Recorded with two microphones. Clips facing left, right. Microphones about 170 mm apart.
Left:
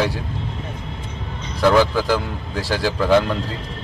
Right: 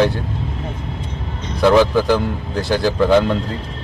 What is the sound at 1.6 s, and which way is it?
Speech, 10° right (ahead or behind).